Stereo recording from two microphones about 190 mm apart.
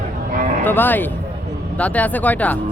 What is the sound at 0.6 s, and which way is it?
Speech, 10° left (ahead or behind).